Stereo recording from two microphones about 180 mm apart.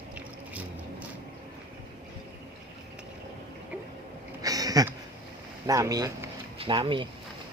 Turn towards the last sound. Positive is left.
turn(degrees=-25)  # may be behind; listen again after turning